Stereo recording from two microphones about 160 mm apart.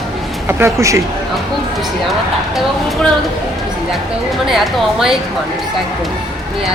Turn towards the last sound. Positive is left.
turn(degrees=0)  # may be behind; listen again after turning